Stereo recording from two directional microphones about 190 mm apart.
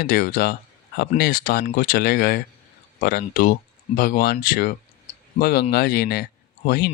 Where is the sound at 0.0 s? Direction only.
50° left (ahead or behind).